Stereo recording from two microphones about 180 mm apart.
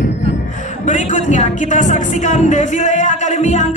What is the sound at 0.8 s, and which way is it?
Speech, 45° left (ahead or behind).